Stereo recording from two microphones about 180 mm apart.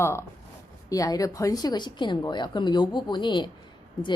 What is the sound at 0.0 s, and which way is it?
Speech, 15° left (ahead or behind).